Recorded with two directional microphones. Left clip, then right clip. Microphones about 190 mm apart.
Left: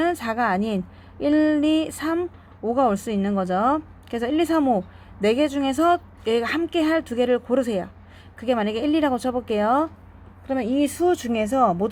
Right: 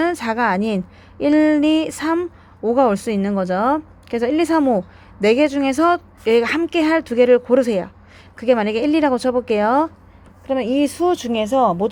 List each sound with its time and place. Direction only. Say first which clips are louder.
0.0 s speech: right 4 dB; 25° right (ahead or behind)